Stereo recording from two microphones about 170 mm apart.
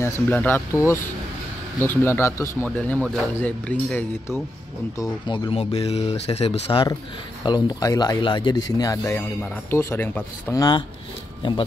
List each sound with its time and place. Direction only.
0.0 s speech: 10° left (ahead or behind)
4.9 s a man's voice: 20° left (ahead or behind)
5.5 s a man's voice: 35° left (ahead or behind); by 10.8 s 20° left (ahead or behind)